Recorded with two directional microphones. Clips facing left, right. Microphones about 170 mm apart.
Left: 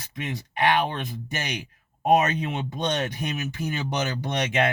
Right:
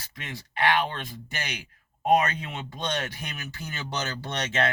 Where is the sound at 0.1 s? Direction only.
20° left (ahead or behind).